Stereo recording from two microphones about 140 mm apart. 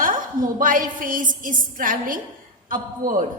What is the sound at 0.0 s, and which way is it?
A woman's voice, 75° right (ahead or behind).